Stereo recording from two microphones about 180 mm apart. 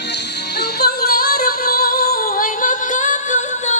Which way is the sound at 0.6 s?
60° left (ahead or behind).